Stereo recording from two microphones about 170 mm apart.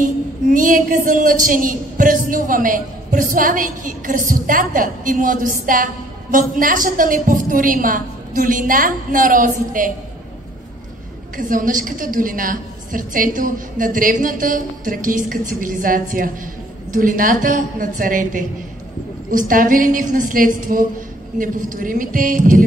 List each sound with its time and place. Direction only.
0.0 s speech: 50° right (ahead or behind)
11.3 s speech: 55° right (ahead or behind)